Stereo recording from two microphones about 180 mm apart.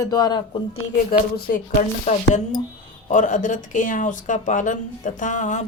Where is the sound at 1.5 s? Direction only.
55° left (ahead or behind).